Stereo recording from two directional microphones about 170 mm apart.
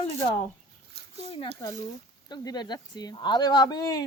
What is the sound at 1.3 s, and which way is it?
Speech, 30° left (ahead or behind).